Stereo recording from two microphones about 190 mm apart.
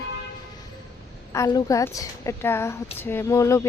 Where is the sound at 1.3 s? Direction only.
20° left (ahead or behind).